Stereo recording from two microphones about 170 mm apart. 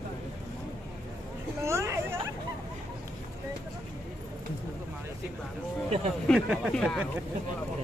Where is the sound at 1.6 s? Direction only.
15° right (ahead or behind).